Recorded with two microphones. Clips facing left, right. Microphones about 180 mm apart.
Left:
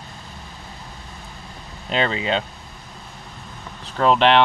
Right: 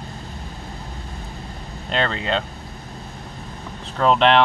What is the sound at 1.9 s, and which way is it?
Speech, 5° left (ahead or behind).